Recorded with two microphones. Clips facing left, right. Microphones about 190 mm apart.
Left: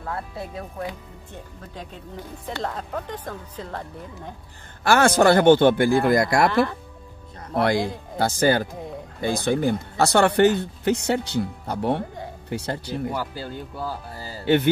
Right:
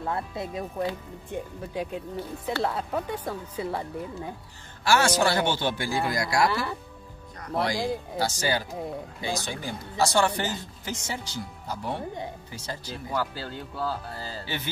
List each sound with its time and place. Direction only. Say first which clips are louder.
0.0 s speech: right 1 dB; 20° right (ahead or behind)
1.3 s speech: right 8 dB; 10° right (ahead or behind)
4.8 s speech: left 6 dB; 55° left (ahead or behind)
13.1 s speech: left 1 dB; 15° left (ahead or behind)
14.4 s speech: left 19 dB; 60° left (ahead or behind)